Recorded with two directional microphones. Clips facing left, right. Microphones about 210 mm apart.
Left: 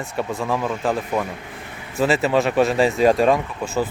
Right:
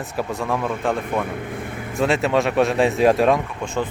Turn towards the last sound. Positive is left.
turn(degrees=5)  # may be behind; listen again after turning